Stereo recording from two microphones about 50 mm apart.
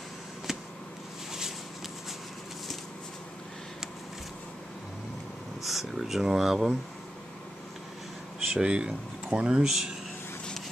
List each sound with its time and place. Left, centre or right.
0.5 s a sound: centre
5.6 s speech: centre
8.5 s speech: centre